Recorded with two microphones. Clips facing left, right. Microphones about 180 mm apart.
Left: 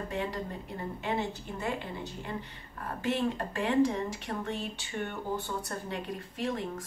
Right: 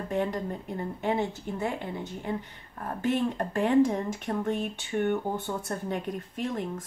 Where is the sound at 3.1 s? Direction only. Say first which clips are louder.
Right 3 dB; 50° right (ahead or behind).